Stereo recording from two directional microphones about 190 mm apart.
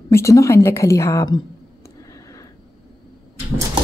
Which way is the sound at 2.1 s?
20° left (ahead or behind).